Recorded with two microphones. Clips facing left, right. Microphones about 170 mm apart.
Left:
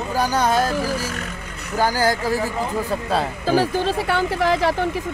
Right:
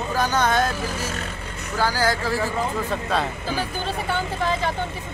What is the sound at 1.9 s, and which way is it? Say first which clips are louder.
Speech: left 2 dB; 45° left (ahead or behind).